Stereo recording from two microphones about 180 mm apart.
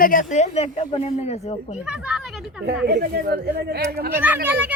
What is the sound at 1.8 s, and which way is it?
Speech, 5° right (ahead or behind).